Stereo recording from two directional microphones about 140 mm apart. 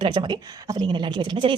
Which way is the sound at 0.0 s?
35° right (ahead or behind).